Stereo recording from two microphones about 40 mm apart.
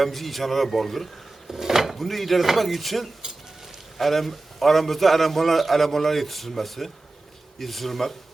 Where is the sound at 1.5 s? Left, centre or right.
Centre.